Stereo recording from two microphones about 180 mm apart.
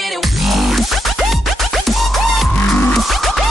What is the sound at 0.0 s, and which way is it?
Music, centre (ahead or behind).